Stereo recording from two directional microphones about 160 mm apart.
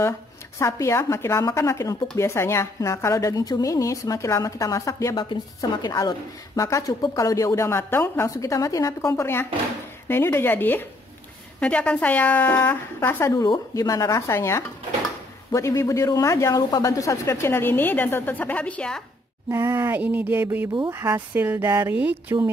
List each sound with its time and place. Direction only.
0.6 s speech: 20° left (ahead or behind)
19.5 s speech: 15° right (ahead or behind)